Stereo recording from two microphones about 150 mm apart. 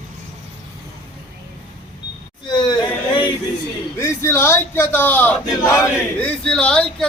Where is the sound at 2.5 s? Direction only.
30° left (ahead or behind).